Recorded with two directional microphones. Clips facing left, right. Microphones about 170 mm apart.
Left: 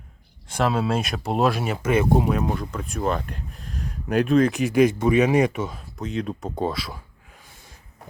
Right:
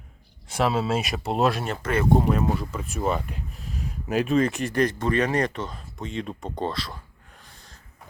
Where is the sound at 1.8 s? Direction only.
15° left (ahead or behind).